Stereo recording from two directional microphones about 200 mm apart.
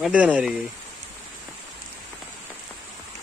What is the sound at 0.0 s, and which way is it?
Speech, 5° right (ahead or behind).